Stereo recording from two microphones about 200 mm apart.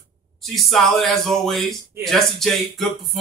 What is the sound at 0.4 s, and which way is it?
Speech, centre (ahead or behind).